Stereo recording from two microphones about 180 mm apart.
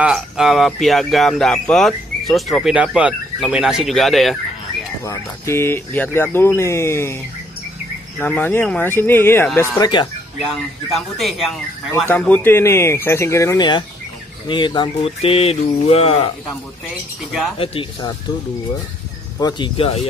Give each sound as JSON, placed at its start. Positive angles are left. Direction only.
{"t": 0.0, "sound": "speech", "side_deg": -5}
{"t": 5.0, "sound": "speech", "side_deg": 15}
{"t": 8.2, "sound": "speech", "side_deg": 10}
{"t": 10.4, "sound": "speech", "side_deg": 0}
{"t": 12.1, "sound": "speech", "side_deg": 10}
{"t": 17.6, "sound": "speech", "side_deg": 30}
{"t": 19.4, "sound": "speech", "side_deg": 30}